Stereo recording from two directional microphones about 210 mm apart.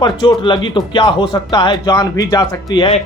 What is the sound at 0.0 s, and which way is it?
Speech, 20° left (ahead or behind).